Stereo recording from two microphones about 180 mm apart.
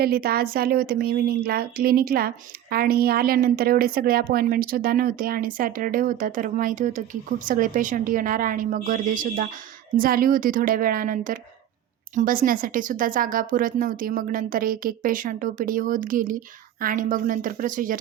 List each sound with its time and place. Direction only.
0.0 s a woman's voice: 55° right (ahead or behind)